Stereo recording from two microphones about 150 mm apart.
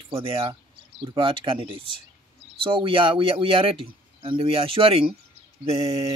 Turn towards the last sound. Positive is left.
turn(degrees=-45)  # may be behind; listen again after turning